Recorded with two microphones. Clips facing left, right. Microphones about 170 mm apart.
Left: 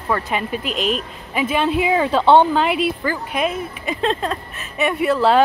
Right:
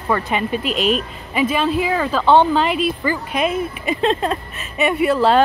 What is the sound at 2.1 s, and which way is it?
Speech, 25° left (ahead or behind).